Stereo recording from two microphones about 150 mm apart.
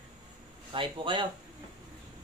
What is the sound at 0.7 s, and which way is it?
Speech, 35° right (ahead or behind).